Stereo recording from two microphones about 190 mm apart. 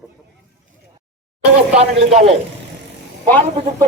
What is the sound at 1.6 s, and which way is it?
Speech, 35° right (ahead or behind).